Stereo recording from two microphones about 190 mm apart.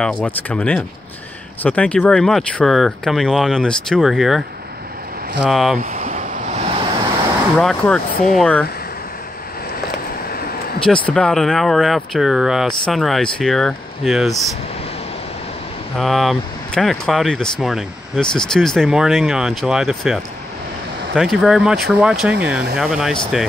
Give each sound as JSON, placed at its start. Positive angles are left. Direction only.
{"t": 0.0, "sound": "speech", "side_deg": 10}
{"t": 5.8, "sound": "a sound", "side_deg": -45}
{"t": 7.5, "sound": "speech", "side_deg": 5}
{"t": 10.3, "sound": "a sound", "side_deg": 50}
{"t": 10.9, "sound": "speech", "side_deg": 5}
{"t": 16.0, "sound": "speech", "side_deg": 0}